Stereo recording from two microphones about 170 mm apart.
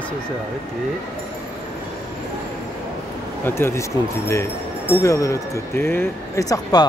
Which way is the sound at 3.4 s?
15° left (ahead or behind).